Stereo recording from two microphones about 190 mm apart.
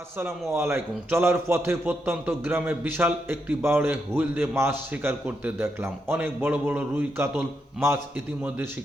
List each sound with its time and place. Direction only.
0.2 s a man's voice: 15° right (ahead or behind)